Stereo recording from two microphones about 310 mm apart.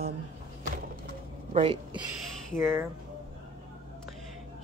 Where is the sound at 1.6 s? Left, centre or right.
Centre.